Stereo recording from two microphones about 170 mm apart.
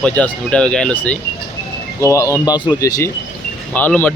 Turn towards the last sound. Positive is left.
turn(degrees=10)  # may be behind; listen again after turning